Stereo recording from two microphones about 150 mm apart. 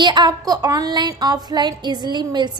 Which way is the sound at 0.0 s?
30° right (ahead or behind).